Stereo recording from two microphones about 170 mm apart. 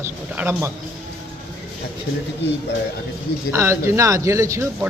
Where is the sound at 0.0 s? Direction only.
15° right (ahead or behind).